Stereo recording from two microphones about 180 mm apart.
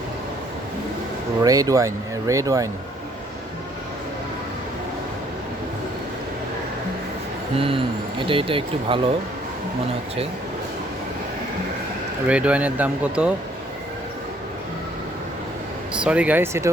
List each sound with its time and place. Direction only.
1.4 s speech: 20° right (ahead or behind)
7.5 s speech: 30° right (ahead or behind)
12.3 s speech: 5° right (ahead or behind)
16.0 s speech: 5° right (ahead or behind)